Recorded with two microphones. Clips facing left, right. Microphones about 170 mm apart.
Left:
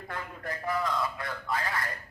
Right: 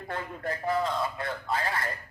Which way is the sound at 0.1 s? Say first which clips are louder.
Right 4 dB; 25° right (ahead or behind).